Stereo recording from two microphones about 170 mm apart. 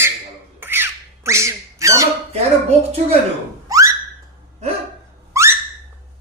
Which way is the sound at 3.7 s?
20° right (ahead or behind).